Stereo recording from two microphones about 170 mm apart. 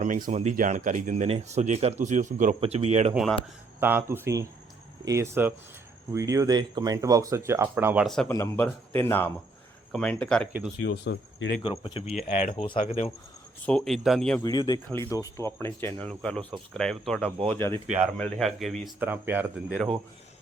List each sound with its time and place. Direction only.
0.0 s speech: 50° right (ahead or behind)
3.8 s speech: 10° right (ahead or behind)
8.0 s speech: 5° left (ahead or behind)
8.3 s speech: 15° left (ahead or behind)
10.8 s speech: 85° left
11.6 s speech: 35° left (ahead or behind)
13.7 s speech: 5° left (ahead or behind)
14.4 s speech: 25° left (ahead or behind); by 17.2 s 5° left (ahead or behind)
17.2 s speech: 35° right (ahead or behind)
18.2 s speech: centre (ahead or behind)
18.9 s speech: 10° right (ahead or behind)